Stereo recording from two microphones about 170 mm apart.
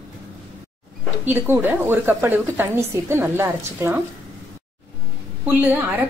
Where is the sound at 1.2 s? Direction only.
10° right (ahead or behind).